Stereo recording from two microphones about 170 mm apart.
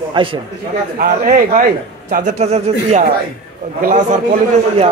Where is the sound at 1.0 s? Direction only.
55° right (ahead or behind).